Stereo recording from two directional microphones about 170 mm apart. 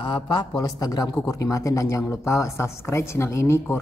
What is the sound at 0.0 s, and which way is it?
Speech, 30° left (ahead or behind).